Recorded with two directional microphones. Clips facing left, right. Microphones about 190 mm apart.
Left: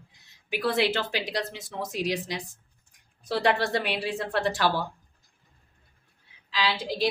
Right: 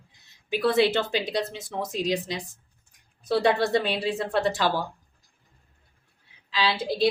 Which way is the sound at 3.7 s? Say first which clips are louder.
Right 4 dB; 25° right (ahead or behind).